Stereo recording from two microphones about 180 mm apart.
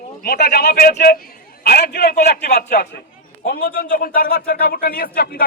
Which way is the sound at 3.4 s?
50° left (ahead or behind).